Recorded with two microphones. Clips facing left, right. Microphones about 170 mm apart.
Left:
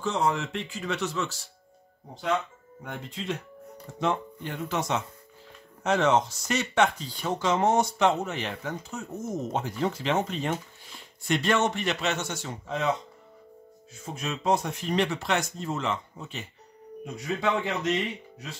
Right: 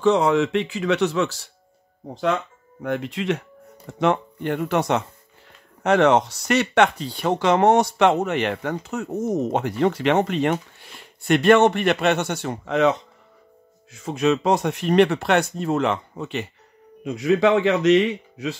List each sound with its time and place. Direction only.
0.0 s speech: 75° right (ahead or behind)
2.8 s speech: 80° right
4.0 s speech: 65° right (ahead or behind)
13.9 s speech: 75° right (ahead or behind)
17.0 s a man's voice: 90° right